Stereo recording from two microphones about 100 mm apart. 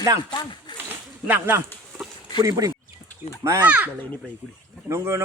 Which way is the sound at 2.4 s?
35° right (ahead or behind).